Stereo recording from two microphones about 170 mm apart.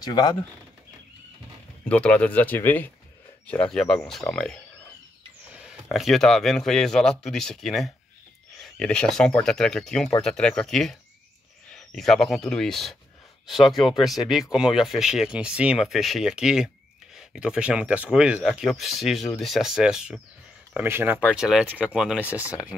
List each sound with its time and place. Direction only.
0.0 s speech: 25° left (ahead or behind)
1.9 s speech: 5° left (ahead or behind)